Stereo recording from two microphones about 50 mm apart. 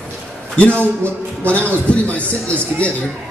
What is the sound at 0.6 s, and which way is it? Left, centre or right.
A man's voice, left.